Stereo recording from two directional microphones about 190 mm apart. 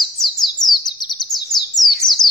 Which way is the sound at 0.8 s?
20° left (ahead or behind).